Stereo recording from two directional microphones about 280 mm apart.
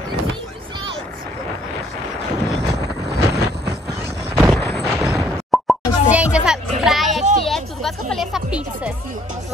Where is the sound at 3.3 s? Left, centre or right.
Right.